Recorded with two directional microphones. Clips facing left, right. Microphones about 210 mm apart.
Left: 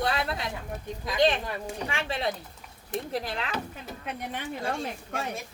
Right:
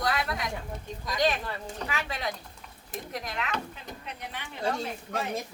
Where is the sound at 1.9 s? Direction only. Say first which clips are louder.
Left 4 dB; 30° left (ahead or behind).